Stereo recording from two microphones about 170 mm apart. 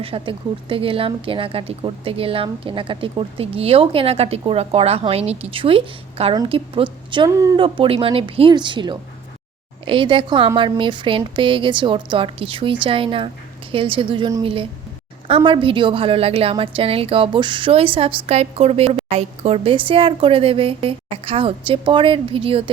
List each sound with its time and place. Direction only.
0.0 s a woman's voice: 30° right (ahead or behind)